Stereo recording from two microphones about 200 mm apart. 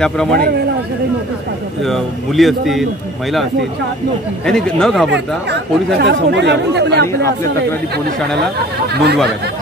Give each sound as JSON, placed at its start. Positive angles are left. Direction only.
{"t": 0.0, "sound": "a man's voice", "side_deg": 5}
{"t": 1.9, "sound": "a man's voice", "side_deg": 0}
{"t": 4.5, "sound": "a man's voice", "side_deg": 5}
{"t": 5.1, "sound": "speech", "side_deg": -55}